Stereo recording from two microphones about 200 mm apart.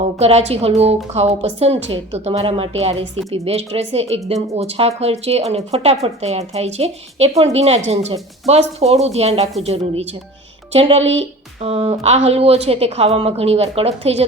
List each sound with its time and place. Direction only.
0.2 s a woman's voice: 30° right (ahead or behind)
11.0 s speech: 70° right (ahead or behind)
11.6 s a woman's voice: 30° right (ahead or behind)